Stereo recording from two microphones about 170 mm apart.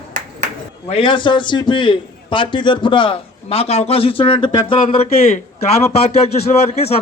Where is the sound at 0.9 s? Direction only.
30° left (ahead or behind).